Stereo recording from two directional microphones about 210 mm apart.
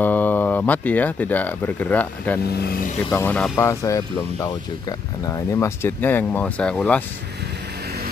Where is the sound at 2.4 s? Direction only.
45° left (ahead or behind).